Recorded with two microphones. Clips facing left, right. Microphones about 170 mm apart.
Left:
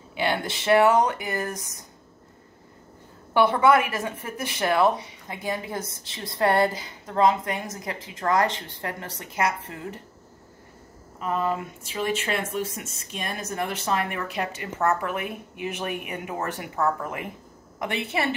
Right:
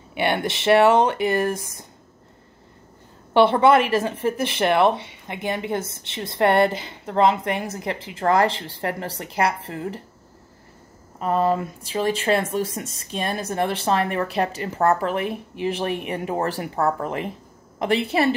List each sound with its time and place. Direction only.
0.1 s a woman's voice: 20° right (ahead or behind)
3.3 s a woman's voice: 30° right (ahead or behind)
11.1 s speech: 35° right (ahead or behind)